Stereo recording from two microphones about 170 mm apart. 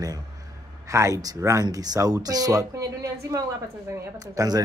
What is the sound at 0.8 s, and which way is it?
Speech, 20° right (ahead or behind).